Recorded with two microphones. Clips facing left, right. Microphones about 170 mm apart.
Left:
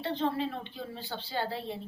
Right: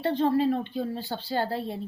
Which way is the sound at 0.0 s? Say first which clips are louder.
Right 7 dB; 45° right (ahead or behind).